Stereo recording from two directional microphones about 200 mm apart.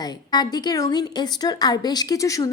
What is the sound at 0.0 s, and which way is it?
A woman's voice, 20° left (ahead or behind).